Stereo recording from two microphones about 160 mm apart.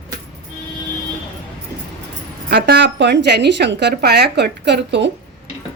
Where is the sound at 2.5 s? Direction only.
90° right.